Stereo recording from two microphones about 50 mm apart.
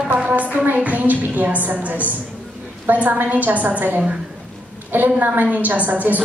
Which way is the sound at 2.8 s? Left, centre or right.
Right.